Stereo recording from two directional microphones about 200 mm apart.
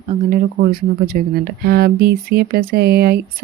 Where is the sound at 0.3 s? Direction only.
45° right (ahead or behind).